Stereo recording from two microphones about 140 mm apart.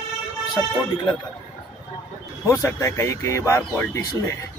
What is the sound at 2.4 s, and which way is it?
A man's voice, 25° left (ahead or behind).